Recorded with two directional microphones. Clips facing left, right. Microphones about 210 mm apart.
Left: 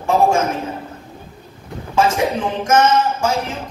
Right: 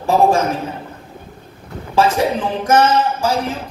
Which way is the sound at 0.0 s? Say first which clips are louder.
Right 1 dB; 35° right (ahead or behind).